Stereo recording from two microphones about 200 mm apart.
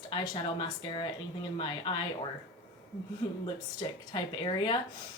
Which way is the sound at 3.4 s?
25° left (ahead or behind).